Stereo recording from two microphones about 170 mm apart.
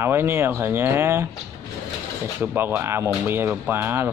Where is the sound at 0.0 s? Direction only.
15° right (ahead or behind).